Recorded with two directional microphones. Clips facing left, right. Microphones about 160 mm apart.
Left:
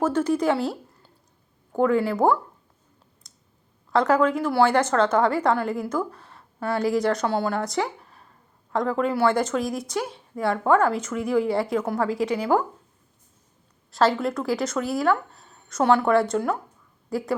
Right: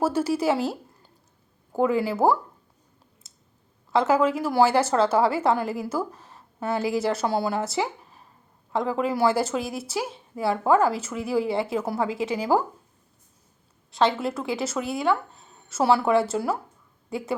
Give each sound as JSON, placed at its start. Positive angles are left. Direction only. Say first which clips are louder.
{"t": 0.0, "sound": "a woman's voice", "louder": "left 1 dB", "side_deg": -10}
{"t": 3.2, "sound": "a sound", "louder": "left 1 dB", "side_deg": -5}
{"t": 3.9, "sound": "a woman's voice", "louder": "left 1 dB", "side_deg": -5}
{"t": 6.3, "sound": "a sound", "louder": "left 1 dB", "side_deg": -25}
{"t": 6.7, "sound": "a woman's voice", "louder": "left 3 dB", "side_deg": -5}
{"t": 11.4, "sound": "a woman's voice", "louder": "left 2 dB", "side_deg": -25}
{"t": 11.8, "sound": "a woman's voice", "louder": "left 1 dB", "side_deg": -10}
{"t": 12.0, "sound": "a woman's voice", "louder": "left 2 dB", "side_deg": -25}
{"t": 13.9, "sound": "a woman's voice", "louder": "left 2 dB", "side_deg": 0}